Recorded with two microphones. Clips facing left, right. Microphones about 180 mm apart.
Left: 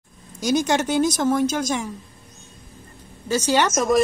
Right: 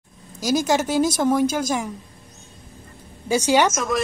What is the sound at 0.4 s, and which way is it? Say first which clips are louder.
A woman's voice: even; centre (ahead or behind).